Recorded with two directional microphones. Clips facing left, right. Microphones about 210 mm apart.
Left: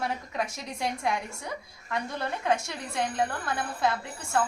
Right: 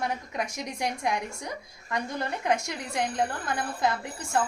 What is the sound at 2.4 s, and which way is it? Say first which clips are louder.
Speech: even; 15° right (ahead or behind).